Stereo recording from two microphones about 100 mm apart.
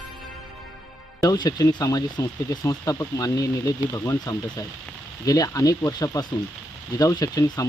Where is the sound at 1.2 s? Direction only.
35° left (ahead or behind).